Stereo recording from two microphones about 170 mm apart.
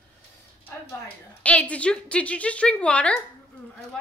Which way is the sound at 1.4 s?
10° left (ahead or behind).